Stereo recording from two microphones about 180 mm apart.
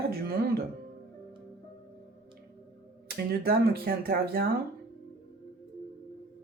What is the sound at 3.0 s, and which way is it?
Speech, 55° right (ahead or behind).